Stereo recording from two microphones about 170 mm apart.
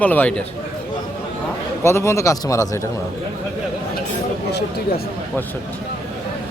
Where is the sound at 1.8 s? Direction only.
15° left (ahead or behind).